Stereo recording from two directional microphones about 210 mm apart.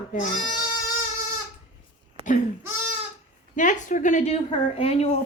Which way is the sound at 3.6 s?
35° left (ahead or behind).